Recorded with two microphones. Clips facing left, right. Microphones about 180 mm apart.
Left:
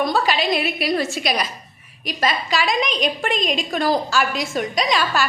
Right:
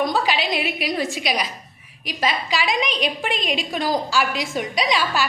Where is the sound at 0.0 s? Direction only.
15° right (ahead or behind).